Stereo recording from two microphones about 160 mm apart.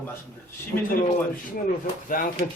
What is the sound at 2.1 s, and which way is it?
Speech, 60° left (ahead or behind).